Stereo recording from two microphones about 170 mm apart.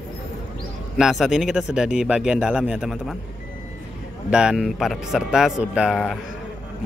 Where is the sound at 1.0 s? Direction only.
Centre (ahead or behind).